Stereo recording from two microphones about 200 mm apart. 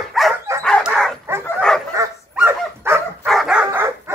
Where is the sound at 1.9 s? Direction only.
15° right (ahead or behind).